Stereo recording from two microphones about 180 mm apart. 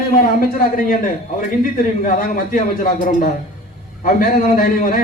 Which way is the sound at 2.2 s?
50° left (ahead or behind).